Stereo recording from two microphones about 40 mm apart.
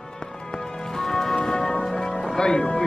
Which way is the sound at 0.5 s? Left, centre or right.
Centre.